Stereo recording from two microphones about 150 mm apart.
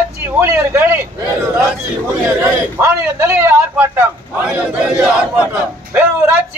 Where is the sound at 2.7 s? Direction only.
15° right (ahead or behind).